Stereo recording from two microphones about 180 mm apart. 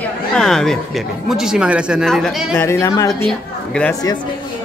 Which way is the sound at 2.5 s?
15° left (ahead or behind).